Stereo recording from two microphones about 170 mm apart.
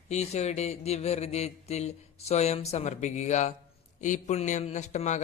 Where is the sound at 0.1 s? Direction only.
40° left (ahead or behind).